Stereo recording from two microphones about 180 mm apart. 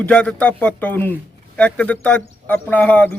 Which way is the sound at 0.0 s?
5° left (ahead or behind).